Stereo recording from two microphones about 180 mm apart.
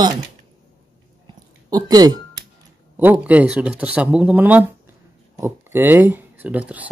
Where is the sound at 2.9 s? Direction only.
10° right (ahead or behind).